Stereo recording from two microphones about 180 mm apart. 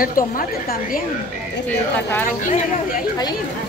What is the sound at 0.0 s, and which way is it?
A woman's voice, 50° left (ahead or behind).